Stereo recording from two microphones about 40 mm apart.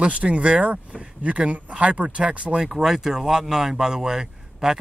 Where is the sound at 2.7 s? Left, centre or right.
Centre.